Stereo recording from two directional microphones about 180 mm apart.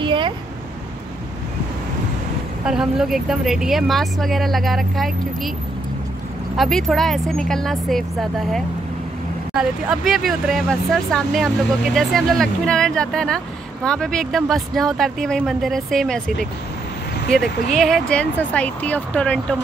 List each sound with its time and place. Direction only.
0.0 s a sound: 25° right (ahead or behind)
2.6 s speech: 5° right (ahead or behind)
6.5 s speech: centre (ahead or behind)